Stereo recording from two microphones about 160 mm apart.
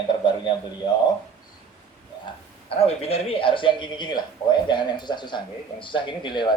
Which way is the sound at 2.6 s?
40° left (ahead or behind).